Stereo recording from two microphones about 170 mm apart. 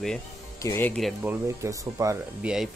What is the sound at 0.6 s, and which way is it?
Speech, 15° left (ahead or behind).